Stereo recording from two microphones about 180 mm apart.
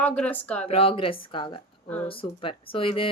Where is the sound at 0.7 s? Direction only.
30° left (ahead or behind).